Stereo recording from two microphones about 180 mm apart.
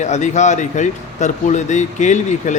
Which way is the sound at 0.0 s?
40° left (ahead or behind).